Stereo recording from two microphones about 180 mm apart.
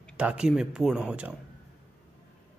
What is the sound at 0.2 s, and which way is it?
Speech, 5° right (ahead or behind).